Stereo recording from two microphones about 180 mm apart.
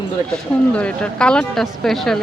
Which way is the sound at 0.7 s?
5° left (ahead or behind).